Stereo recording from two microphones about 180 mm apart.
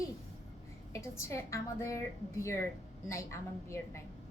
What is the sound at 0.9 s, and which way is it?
A woman's voice, 15° left (ahead or behind).